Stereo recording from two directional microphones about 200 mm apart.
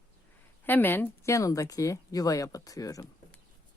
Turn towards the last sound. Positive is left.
turn(degrees=15)  # may be behind; listen again after turning